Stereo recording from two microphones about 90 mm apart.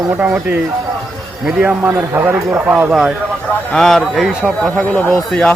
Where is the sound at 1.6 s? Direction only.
20° right (ahead or behind).